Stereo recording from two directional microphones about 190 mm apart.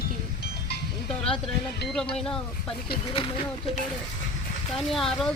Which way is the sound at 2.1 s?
5° left (ahead or behind).